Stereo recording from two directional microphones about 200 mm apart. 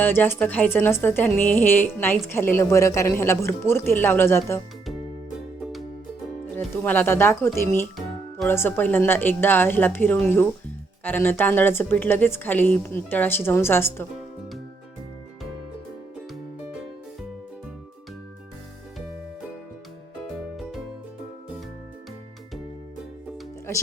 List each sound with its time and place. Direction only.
0.0 s a woman's voice: 10° left (ahead or behind)
6.6 s a woman's voice: 10° left (ahead or behind)
20.6 s music: centre (ahead or behind)